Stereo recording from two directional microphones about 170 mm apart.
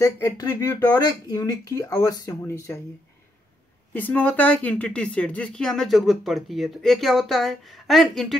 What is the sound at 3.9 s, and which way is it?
Speech, 10° left (ahead or behind).